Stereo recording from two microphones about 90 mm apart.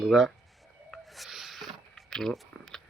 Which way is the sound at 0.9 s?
Centre (ahead or behind).